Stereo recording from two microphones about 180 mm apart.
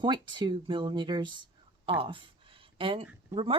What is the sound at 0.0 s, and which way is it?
Speech, 25° right (ahead or behind).